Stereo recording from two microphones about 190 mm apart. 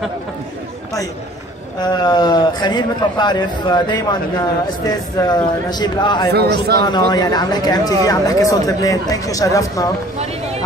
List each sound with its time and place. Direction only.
1.8 s speech: 20° left (ahead or behind)
6.3 s a man's voice: 60° right (ahead or behind)
6.8 s speech: 20° left (ahead or behind)